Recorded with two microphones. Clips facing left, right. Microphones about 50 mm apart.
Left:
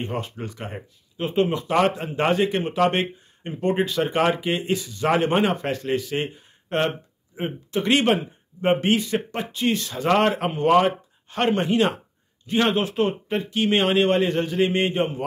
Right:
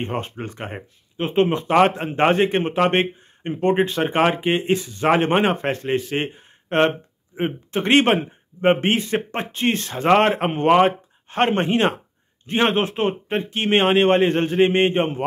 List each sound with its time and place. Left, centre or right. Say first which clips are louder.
0.0 s speech: right 2 dB; right